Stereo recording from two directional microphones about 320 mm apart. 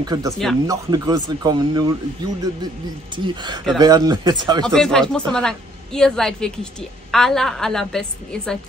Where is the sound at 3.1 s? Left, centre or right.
Centre.